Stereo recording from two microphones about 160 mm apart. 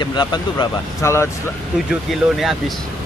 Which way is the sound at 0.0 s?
25° left (ahead or behind).